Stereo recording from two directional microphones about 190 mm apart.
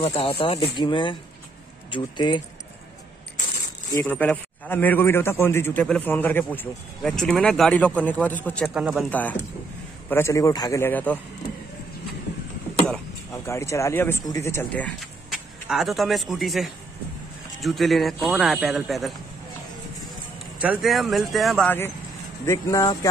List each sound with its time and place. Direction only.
0.4 s speech: 30° left (ahead or behind)
3.9 s a man's voice: 15° left (ahead or behind)
8.7 s speech: 5° right (ahead or behind)
9.1 s a man's voice: 10° left (ahead or behind)
13.3 s speech: 15° left (ahead or behind); by 19.1 s centre (ahead or behind)
20.5 s a man's voice: 5° right (ahead or behind); by 22.9 s 15° left (ahead or behind)